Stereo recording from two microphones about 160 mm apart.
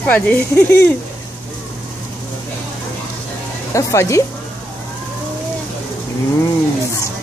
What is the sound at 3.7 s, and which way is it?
Speech, 20° left (ahead or behind).